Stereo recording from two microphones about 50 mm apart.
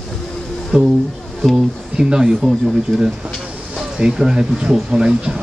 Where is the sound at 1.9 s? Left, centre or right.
Centre.